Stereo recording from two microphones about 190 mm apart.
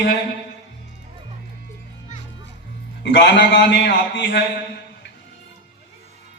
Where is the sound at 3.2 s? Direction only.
60° left (ahead or behind).